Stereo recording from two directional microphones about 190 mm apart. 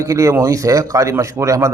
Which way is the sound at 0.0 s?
15° right (ahead or behind).